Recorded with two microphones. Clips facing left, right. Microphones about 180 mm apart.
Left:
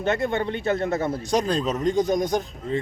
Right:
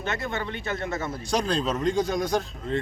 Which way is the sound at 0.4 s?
35° left (ahead or behind).